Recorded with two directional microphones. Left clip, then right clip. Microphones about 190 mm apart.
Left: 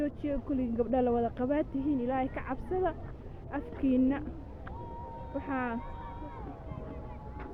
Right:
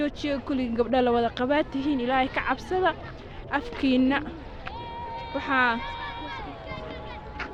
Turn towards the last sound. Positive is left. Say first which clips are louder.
# right 11 dB
turn(degrees=-15)  # may be behind; listen again after turning